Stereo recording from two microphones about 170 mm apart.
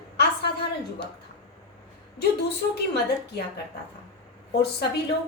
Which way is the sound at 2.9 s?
75° left (ahead or behind).